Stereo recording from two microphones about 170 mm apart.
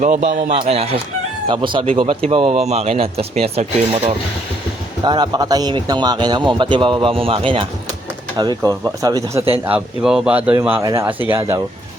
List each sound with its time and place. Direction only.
0.0 s a man's voice: 50° right (ahead or behind); by 7.6 s 35° right (ahead or behind)
8.4 s a man's voice: 20° right (ahead or behind)
9.6 s speech: 5° right (ahead or behind)